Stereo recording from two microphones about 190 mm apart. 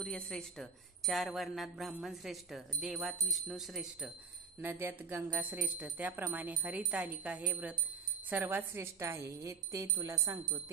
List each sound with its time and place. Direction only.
0.0 s speech: 5° left (ahead or behind); by 10.6 s 20° right (ahead or behind)